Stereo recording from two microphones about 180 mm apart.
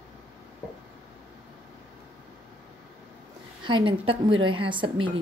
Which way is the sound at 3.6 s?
25° right (ahead or behind).